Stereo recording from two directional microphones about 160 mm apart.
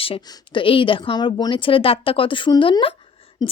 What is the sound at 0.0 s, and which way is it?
A woman's voice, 35° left (ahead or behind).